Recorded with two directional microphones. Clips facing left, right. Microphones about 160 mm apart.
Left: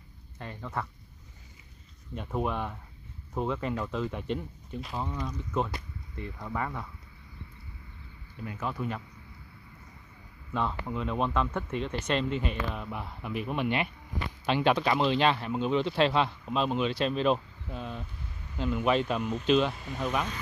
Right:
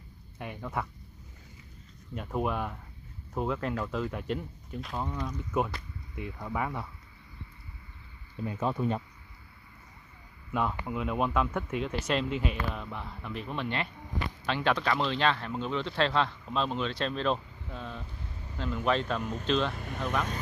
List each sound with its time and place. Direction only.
0.4 s speech: 10° right (ahead or behind)
2.1 s speech: 5° right (ahead or behind)
8.5 s speech: 25° right (ahead or behind)
10.5 s speech: 10° right (ahead or behind); by 19.7 s 10° left (ahead or behind)
19.7 s speech: 50° right (ahead or behind)
20.0 s speech: 10° left (ahead or behind)